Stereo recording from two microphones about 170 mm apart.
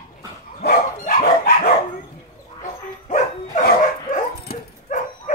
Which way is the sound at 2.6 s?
45° left (ahead or behind).